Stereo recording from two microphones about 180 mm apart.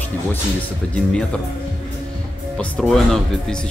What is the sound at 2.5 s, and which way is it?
Speech, 5° left (ahead or behind).